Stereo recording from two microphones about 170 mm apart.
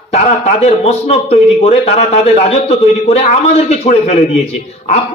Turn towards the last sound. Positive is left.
turn(degrees=40)  # may be behind; listen again after turning